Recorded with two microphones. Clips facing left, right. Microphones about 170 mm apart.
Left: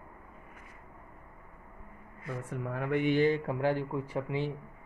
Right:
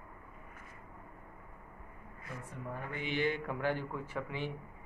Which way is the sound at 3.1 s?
35° left (ahead or behind).